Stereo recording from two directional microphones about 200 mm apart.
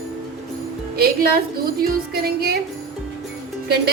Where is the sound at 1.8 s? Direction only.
50° right (ahead or behind).